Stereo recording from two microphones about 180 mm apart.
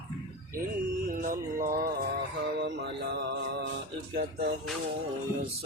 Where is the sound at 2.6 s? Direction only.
65° right (ahead or behind).